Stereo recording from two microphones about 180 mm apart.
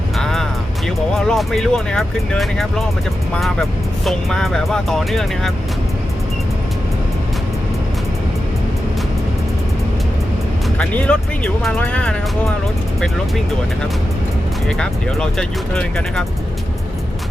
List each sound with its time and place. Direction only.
0.2 s music: centre (ahead or behind)
0.9 s speech: centre (ahead or behind)
10.8 s speech: 5° left (ahead or behind)
14.7 s speech: 5° left (ahead or behind)